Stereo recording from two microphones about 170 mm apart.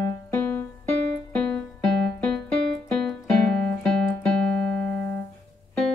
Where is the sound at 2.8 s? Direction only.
5° left (ahead or behind).